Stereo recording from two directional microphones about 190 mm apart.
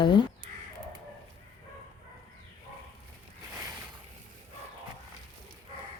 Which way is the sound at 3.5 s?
15° right (ahead or behind).